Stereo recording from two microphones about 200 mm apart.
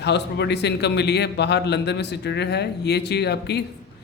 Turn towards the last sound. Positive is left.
turn(degrees=55)  # may be behind; listen again after turning